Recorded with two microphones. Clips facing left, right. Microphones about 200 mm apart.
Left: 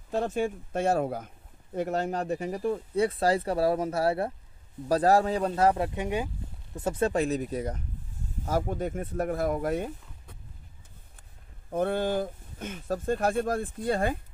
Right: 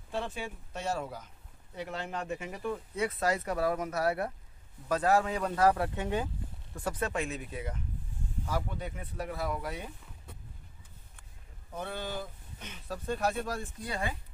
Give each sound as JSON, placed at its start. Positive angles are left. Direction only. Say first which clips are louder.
{"t": 0.1, "sound": "speech", "louder": "left 9 dB", "side_deg": 45}
{"t": 11.7, "sound": "speech", "louder": "left 11 dB", "side_deg": 50}